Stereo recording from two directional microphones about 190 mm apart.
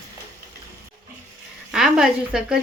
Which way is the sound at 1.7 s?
5° right (ahead or behind).